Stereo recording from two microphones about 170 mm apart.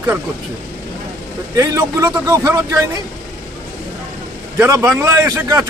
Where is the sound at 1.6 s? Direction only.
20° right (ahead or behind).